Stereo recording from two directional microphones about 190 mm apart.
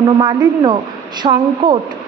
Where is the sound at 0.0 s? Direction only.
25° right (ahead or behind).